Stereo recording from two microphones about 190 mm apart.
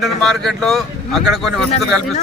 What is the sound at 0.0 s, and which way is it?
Speech, centre (ahead or behind).